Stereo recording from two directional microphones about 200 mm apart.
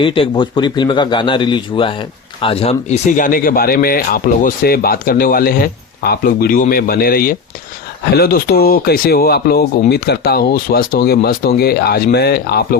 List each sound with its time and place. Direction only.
0.0 s speech: 25° left (ahead or behind); by 12.8 s 50° left (ahead or behind)